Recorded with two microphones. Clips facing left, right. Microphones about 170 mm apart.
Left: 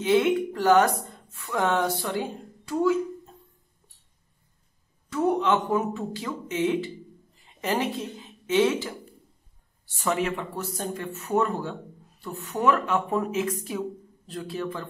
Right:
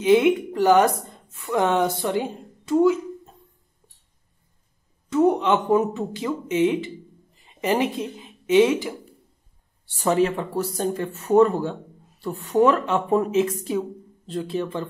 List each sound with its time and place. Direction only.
0.0 s a woman's voice: 15° right (ahead or behind)
5.1 s a woman's voice: 20° right (ahead or behind)
9.8 s speech: 35° right (ahead or behind)